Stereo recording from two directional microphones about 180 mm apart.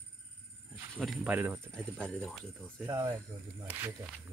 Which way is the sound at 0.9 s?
Centre (ahead or behind).